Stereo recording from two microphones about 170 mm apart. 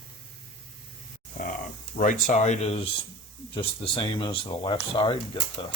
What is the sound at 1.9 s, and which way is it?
Speech, 50° left (ahead or behind).